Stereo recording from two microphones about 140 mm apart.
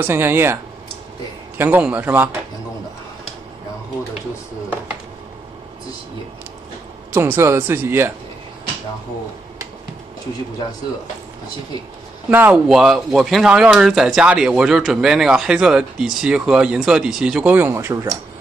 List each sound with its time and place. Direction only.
0.0 s speech: 15° right (ahead or behind)
1.6 s speech: 10° right (ahead or behind)
7.1 s speech: 20° right (ahead or behind)
12.3 s speech: 15° right (ahead or behind)
12.6 s speech: centre (ahead or behind); by 17.9 s 15° right (ahead or behind)